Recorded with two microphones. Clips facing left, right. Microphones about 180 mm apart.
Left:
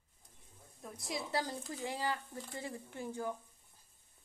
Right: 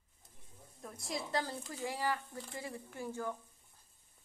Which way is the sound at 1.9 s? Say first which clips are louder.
Right 2 dB; 20° left (ahead or behind).